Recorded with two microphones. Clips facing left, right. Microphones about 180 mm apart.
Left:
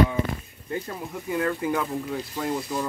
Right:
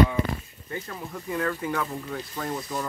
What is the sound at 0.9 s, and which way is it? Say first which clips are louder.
Speech: left 2 dB; 15° left (ahead or behind).